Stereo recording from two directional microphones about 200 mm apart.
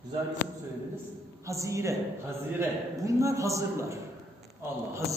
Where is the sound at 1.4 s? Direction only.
15° right (ahead or behind).